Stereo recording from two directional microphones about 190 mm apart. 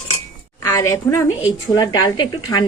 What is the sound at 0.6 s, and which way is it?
A woman's voice, 15° left (ahead or behind).